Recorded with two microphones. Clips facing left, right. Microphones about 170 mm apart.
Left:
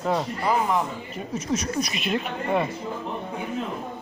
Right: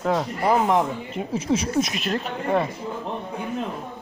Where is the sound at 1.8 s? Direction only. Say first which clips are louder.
Even; 5° left (ahead or behind).